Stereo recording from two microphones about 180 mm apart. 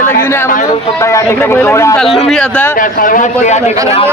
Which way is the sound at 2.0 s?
Centre (ahead or behind).